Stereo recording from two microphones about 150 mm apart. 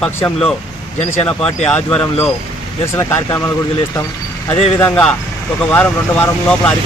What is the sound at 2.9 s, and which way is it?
Speech, 20° left (ahead or behind).